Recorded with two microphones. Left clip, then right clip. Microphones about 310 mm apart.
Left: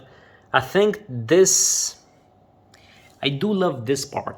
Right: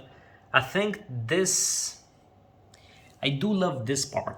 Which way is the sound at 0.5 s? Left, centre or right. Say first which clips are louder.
Left 6 dB; centre.